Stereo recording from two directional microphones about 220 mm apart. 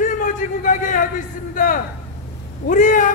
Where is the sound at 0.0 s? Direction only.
35° left (ahead or behind).